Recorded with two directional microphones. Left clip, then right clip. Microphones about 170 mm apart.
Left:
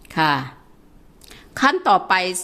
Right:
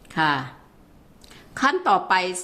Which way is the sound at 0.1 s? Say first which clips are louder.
Left 3 dB; 30° left (ahead or behind).